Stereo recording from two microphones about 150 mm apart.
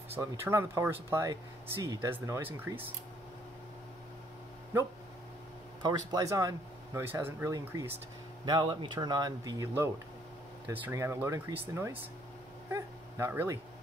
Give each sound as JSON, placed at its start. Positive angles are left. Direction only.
{"t": 0.1, "sound": "speech", "side_deg": -15}
{"t": 5.8, "sound": "speech", "side_deg": -25}
{"t": 8.5, "sound": "speech", "side_deg": -30}